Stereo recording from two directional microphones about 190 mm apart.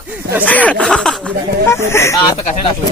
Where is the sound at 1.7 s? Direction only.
15° left (ahead or behind).